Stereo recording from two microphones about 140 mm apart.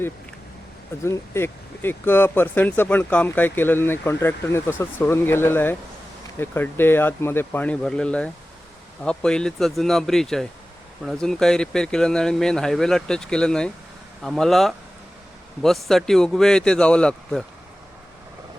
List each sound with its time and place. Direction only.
1.0 s speech: 20° left (ahead or behind)